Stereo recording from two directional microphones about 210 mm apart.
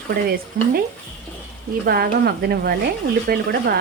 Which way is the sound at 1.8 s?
45° right (ahead or behind).